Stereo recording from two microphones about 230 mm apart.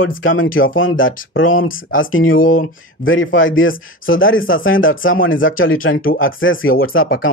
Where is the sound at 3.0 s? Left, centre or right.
Left.